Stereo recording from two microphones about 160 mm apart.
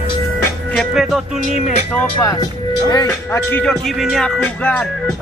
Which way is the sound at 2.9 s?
25° left (ahead or behind).